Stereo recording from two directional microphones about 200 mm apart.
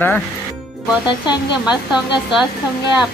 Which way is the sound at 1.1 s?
25° left (ahead or behind).